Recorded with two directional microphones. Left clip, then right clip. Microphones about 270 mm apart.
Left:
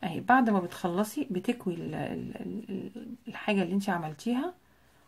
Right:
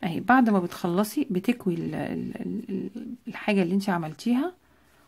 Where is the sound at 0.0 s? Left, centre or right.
Right.